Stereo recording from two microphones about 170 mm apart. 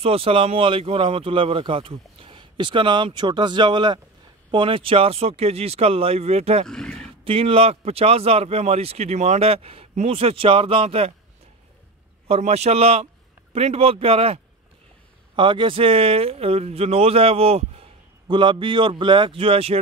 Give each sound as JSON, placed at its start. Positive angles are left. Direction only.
{"t": 0.0, "sound": "speech", "side_deg": -35}
{"t": 6.7, "sound": "roaring cats", "side_deg": 5}
{"t": 7.2, "sound": "speech", "side_deg": -35}
{"t": 12.3, "sound": "a man's voice", "side_deg": -40}